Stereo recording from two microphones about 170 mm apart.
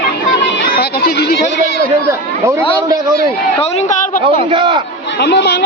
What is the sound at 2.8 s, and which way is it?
Speech, 20° right (ahead or behind).